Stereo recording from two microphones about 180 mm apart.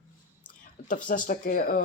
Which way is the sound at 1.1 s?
50° left (ahead or behind).